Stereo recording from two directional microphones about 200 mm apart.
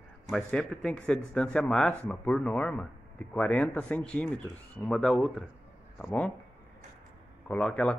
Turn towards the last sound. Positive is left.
turn(degrees=5)  # may be behind; listen again after turning